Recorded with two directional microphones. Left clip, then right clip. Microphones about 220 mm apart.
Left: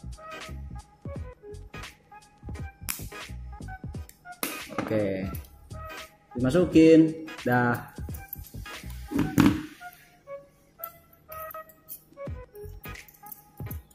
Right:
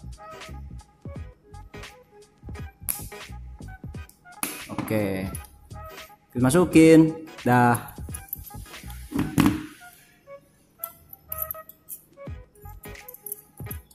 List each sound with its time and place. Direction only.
0.0 s music: centre (ahead or behind)
4.9 s speech: 15° right (ahead or behind)
5.3 s music: centre (ahead or behind)
6.4 s speech: 20° right (ahead or behind)
7.9 s music: centre (ahead or behind)
13.6 s music: centre (ahead or behind)